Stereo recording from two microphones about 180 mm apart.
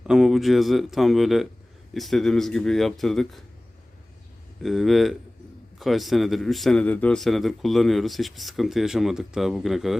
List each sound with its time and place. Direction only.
0.0 s speech: 5° right (ahead or behind)
4.6 s speech: centre (ahead or behind)